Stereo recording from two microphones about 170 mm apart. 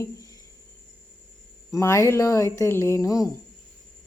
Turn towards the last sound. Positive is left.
turn(degrees=20)  # may be behind; listen again after turning